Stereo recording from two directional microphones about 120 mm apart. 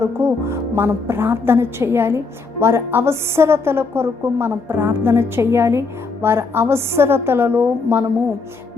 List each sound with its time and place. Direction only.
0.0 s a woman's voice: 20° right (ahead or behind)